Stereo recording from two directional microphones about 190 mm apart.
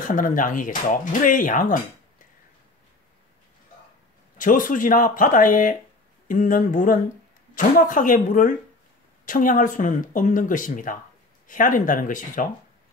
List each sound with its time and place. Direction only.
0.1 s speech: 45° left (ahead or behind)
4.4 s speech: 45° left (ahead or behind)